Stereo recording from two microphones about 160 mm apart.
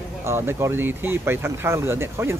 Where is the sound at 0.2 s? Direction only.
15° right (ahead or behind).